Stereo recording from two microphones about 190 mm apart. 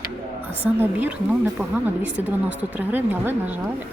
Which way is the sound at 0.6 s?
10° right (ahead or behind).